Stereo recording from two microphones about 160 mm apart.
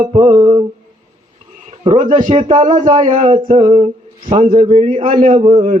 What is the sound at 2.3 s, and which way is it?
Speech, 40° right (ahead or behind).